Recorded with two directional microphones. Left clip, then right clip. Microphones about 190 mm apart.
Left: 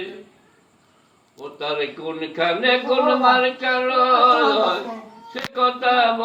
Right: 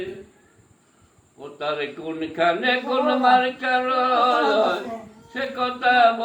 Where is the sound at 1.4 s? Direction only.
15° right (ahead or behind).